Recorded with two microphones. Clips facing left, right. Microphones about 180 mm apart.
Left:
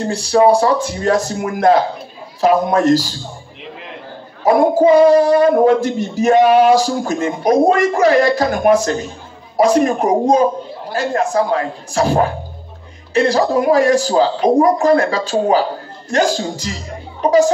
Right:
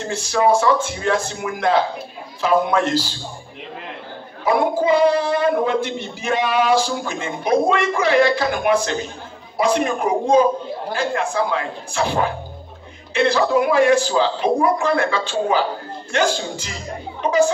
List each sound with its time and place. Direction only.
0.0 s speech: 35° left (ahead or behind)
4.5 s speech: 45° left (ahead or behind)